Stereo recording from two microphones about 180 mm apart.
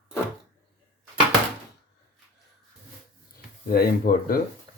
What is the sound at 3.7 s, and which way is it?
Speech, 55° left (ahead or behind).